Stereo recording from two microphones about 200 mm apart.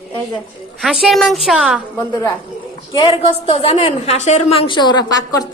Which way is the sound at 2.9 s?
25° left (ahead or behind).